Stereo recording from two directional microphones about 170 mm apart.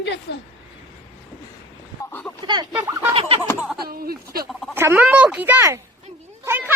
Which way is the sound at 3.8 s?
60° right (ahead or behind).